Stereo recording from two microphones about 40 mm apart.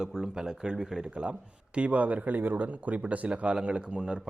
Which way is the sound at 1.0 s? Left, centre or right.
Right.